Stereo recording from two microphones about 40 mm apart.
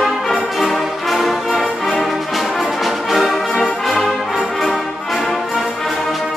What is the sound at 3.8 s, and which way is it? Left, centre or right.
Music, centre.